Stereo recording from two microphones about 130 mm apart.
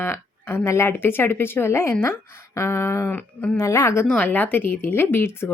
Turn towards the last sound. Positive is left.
turn(degrees=20)  # may be behind; listen again after turning